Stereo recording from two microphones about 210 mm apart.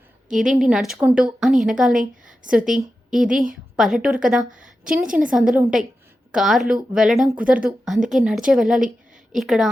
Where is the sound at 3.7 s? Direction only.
Centre (ahead or behind).